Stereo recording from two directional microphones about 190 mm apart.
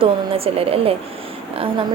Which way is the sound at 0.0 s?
30° right (ahead or behind).